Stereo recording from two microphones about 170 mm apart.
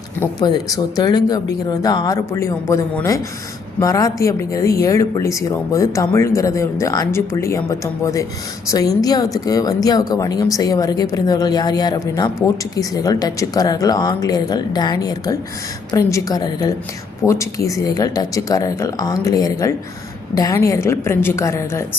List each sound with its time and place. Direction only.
0.2 s a woman's voice: 20° left (ahead or behind)